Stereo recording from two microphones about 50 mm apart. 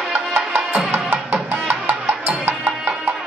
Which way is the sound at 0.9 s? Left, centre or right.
Right.